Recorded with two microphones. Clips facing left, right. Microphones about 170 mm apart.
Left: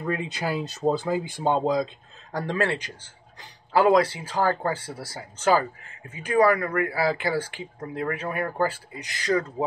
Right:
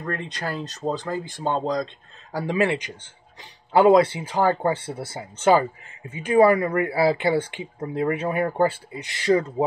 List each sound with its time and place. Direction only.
0.0 s speech: 5° left (ahead or behind)
2.3 s speech: 10° right (ahead or behind)